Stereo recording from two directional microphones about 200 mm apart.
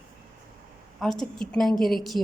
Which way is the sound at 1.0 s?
Centre (ahead or behind).